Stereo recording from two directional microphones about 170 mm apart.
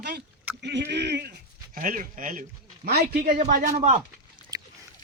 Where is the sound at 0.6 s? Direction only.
90° right.